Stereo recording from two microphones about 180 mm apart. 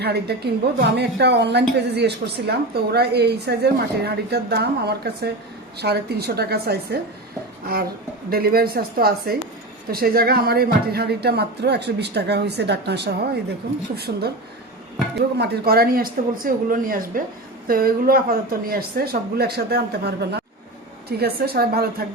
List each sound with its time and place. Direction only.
0.0 s speech: 65° right (ahead or behind)
15.4 s speech: 60° right (ahead or behind)